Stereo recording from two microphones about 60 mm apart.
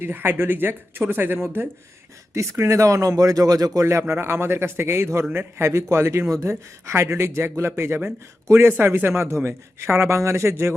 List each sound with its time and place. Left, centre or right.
0.0 s speech: right
2.3 s speech: right
3.8 s speech: right